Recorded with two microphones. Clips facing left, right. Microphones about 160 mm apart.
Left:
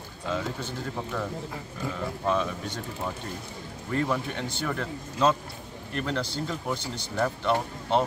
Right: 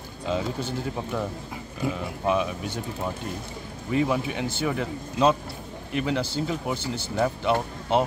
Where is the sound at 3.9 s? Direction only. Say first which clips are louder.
Right 4 dB; 10° right (ahead or behind).